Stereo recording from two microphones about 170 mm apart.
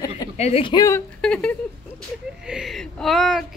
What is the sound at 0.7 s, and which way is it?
Speech, 15° left (ahead or behind).